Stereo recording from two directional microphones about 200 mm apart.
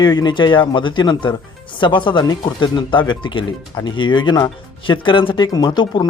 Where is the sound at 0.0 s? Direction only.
20° left (ahead or behind).